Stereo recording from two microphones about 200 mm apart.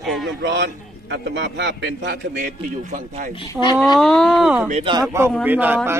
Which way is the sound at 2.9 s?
35° right (ahead or behind).